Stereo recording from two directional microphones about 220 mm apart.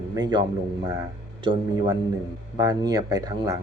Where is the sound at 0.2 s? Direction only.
20° right (ahead or behind).